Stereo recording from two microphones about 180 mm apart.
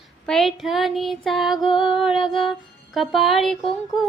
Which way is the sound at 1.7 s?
30° left (ahead or behind).